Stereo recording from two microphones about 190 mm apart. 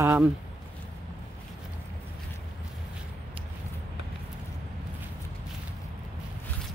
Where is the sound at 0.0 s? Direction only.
10° right (ahead or behind).